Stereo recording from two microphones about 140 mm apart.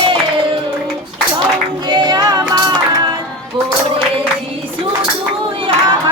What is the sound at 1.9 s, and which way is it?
Music, 30° right (ahead or behind).